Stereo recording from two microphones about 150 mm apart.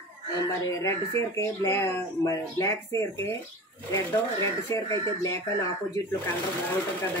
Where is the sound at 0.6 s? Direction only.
20° left (ahead or behind).